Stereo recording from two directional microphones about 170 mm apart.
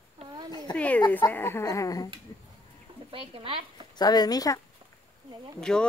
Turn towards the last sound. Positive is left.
turn(degrees=5)  # may be behind; listen again after turning